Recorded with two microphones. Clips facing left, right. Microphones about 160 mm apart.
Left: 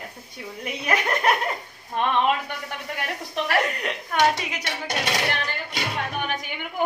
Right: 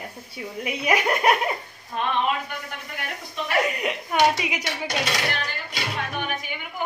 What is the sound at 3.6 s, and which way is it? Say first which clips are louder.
A woman's voice: right 2 dB; 5° right (ahead or behind).